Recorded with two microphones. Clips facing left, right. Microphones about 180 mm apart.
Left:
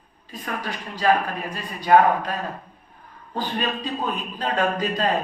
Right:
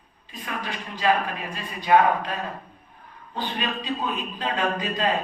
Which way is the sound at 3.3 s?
40° left (ahead or behind).